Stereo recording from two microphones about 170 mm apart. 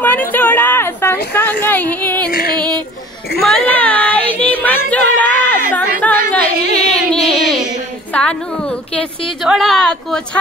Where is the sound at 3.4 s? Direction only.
5° left (ahead or behind).